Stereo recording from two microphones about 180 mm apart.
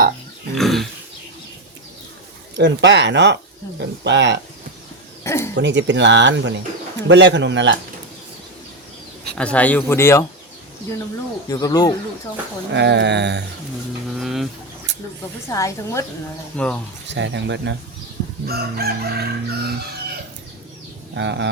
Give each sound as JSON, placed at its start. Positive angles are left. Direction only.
{"t": 0.5, "sound": "pig", "side_deg": 0}
{"t": 2.6, "sound": "speech", "side_deg": -75}
{"t": 5.2, "sound": "a sound", "side_deg": 15}
{"t": 5.5, "sound": "speech", "side_deg": -80}
{"t": 9.3, "sound": "speech", "side_deg": 5}
{"t": 11.4, "sound": "speech", "side_deg": 20}
{"t": 12.7, "sound": "speech", "side_deg": -75}
{"t": 14.2, "sound": "speech", "side_deg": 0}
{"t": 14.9, "sound": "snake", "side_deg": -75}
{"t": 15.4, "sound": "speech", "side_deg": 15}
{"t": 17.1, "sound": "speech", "side_deg": -85}
{"t": 18.4, "sound": "chicken", "side_deg": -60}
{"t": 21.2, "sound": "speech", "side_deg": -80}